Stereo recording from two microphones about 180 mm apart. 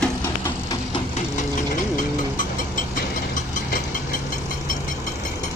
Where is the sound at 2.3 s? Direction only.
45° left (ahead or behind).